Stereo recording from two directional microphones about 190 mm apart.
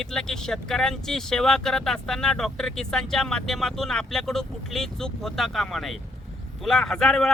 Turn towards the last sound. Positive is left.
turn(degrees=5)  # may be behind; listen again after turning